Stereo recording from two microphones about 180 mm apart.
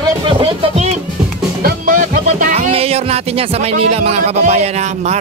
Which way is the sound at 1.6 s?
50° right (ahead or behind).